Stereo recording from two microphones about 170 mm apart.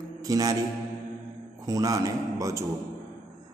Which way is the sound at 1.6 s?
20° right (ahead or behind).